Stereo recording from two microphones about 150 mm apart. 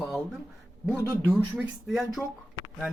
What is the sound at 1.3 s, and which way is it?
Speech, 5° right (ahead or behind).